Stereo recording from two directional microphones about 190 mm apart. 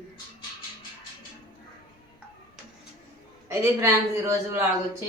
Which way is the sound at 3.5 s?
15° right (ahead or behind).